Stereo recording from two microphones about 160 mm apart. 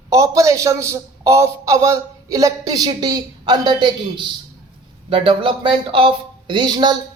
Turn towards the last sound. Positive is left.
turn(degrees=-25)  # may be behind; listen again after turning